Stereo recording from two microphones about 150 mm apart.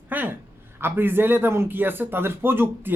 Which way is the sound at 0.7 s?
15° right (ahead or behind).